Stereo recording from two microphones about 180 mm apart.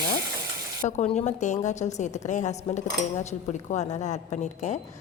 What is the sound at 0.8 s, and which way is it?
A woman's voice, 40° left (ahead or behind).